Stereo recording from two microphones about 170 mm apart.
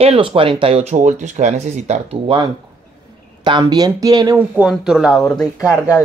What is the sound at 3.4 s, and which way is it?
Speech, 25° right (ahead or behind).